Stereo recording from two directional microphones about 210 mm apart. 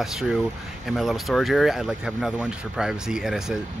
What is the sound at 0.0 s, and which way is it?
Speech, centre (ahead or behind).